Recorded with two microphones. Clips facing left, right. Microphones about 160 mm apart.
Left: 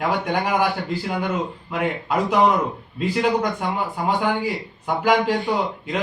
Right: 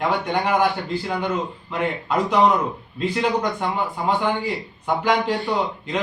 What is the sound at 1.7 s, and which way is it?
A man's voice, 5° left (ahead or behind).